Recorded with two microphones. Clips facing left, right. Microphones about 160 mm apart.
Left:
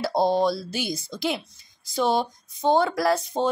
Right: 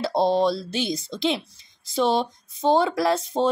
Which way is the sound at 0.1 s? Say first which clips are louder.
Right 1 dB; 25° right (ahead or behind).